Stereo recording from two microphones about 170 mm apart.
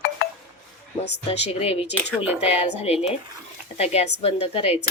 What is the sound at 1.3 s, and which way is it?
Speech, 35° left (ahead or behind).